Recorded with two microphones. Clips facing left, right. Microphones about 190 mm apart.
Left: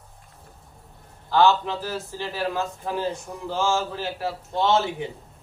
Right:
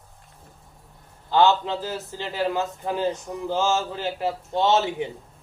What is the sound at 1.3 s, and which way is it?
A man's voice, 20° right (ahead or behind).